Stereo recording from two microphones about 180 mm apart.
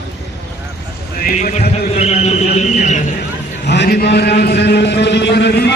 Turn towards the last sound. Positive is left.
turn(degrees=70)  # may be behind; listen again after turning